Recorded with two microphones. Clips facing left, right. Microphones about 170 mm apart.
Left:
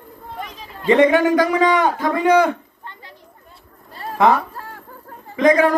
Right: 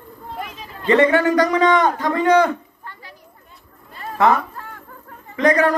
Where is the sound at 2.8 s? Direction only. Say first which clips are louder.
Even; 25° left (ahead or behind).